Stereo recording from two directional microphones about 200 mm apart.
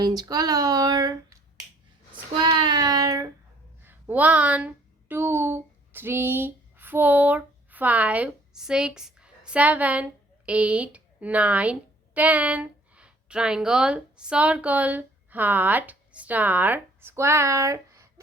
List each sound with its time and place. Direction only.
0.0 s speech: 20° right (ahead or behind)